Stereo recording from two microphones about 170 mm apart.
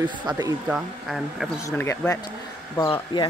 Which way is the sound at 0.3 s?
25° right (ahead or behind).